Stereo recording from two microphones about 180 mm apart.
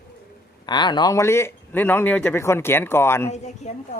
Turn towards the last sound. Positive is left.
turn(degrees=40)  # may be behind; listen again after turning